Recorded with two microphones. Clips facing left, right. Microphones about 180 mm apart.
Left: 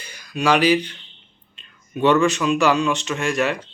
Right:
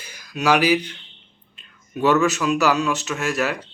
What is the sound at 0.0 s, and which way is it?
Speech, 10° right (ahead or behind).